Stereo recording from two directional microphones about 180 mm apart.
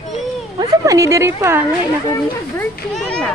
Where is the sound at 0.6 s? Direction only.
20° right (ahead or behind).